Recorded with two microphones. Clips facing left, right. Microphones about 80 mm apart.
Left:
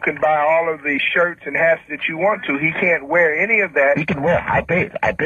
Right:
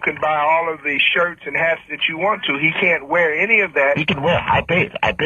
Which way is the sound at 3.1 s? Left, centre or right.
Left.